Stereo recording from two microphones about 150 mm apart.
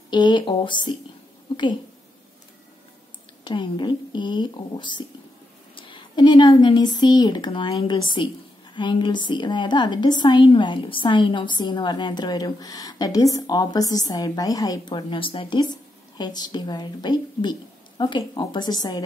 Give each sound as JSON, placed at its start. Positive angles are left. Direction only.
{"t": 0.1, "sound": "speech", "side_deg": 30}
{"t": 3.4, "sound": "a woman's voice", "side_deg": 30}